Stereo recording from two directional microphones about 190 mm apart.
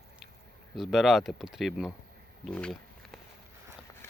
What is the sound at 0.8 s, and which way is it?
Speech, centre (ahead or behind).